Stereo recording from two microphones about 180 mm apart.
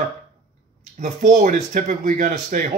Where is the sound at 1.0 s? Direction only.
45° right (ahead or behind).